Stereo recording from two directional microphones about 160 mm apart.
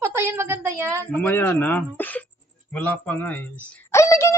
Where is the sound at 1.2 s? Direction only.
10° left (ahead or behind).